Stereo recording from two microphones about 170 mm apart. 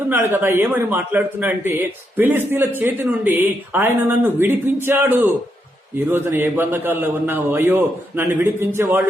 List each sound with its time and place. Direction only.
0.1 s a man's voice: 15° right (ahead or behind)